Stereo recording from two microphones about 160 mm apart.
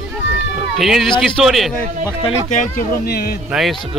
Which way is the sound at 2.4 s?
55° left (ahead or behind).